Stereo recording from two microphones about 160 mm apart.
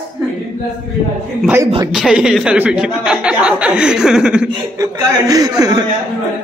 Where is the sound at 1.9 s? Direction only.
5° right (ahead or behind).